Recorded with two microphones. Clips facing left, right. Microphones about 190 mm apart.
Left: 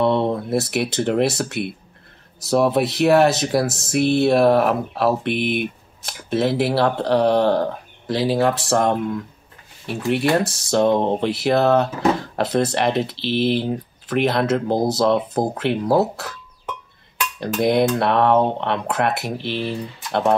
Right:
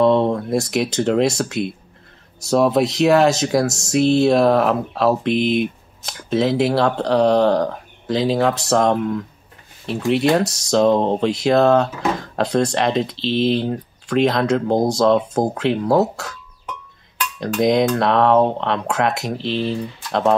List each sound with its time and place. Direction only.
0.3 s speech: 5° left (ahead or behind)
9.8 s speech: 25° right (ahead or behind)
10.3 s speech: 5° left (ahead or behind)
17.4 s speech: 5° left (ahead or behind)
19.3 s speech: 25° right (ahead or behind)
20.1 s speech: 10° left (ahead or behind)